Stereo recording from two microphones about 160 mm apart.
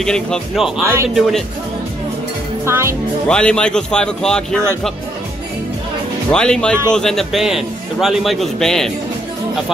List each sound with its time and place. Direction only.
0.0 s a man's voice: 5° left (ahead or behind)
2.6 s speech: 15° right (ahead or behind)
3.3 s a man's voice: 5° left (ahead or behind)
6.3 s a man's voice: 5° left (ahead or behind)